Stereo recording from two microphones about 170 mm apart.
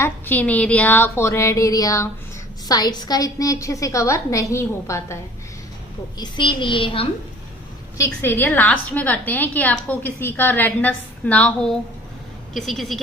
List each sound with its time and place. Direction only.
0.0 s a woman's voice: 10° left (ahead or behind)
6.1 s a woman's voice: 30° left (ahead or behind)
7.9 s a woman's voice: 15° left (ahead or behind); by 13.0 s centre (ahead or behind)